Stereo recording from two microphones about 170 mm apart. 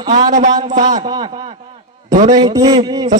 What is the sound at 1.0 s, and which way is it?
A man's voice, 30° right (ahead or behind).